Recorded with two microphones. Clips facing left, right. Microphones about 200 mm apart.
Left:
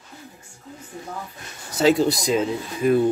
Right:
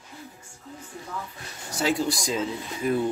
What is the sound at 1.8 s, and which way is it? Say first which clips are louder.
Speech: left 7 dB; 25° left (ahead or behind).